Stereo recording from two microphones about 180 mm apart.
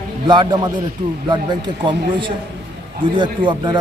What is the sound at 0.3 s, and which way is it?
Speech, 25° right (ahead or behind).